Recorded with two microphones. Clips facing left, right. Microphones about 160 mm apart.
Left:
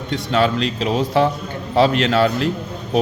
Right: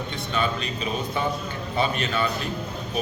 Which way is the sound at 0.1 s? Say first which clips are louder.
Left 11 dB; 90° left.